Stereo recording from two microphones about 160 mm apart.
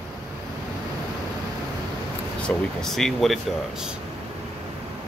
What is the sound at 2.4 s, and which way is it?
Speech, centre (ahead or behind).